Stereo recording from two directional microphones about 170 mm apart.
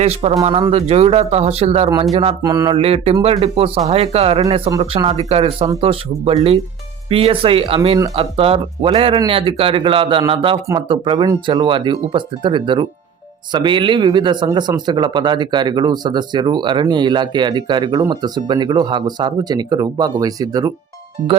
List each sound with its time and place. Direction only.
0.0 s speech: 40° right (ahead or behind)
2.4 s a man's voice: 20° right (ahead or behind)